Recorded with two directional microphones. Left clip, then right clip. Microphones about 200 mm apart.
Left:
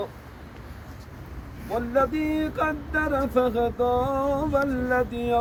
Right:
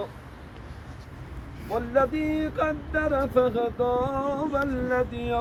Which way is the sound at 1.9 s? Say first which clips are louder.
Even; 55° left (ahead or behind).